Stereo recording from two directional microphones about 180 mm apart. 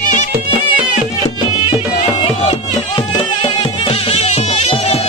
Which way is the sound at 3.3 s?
25° left (ahead or behind).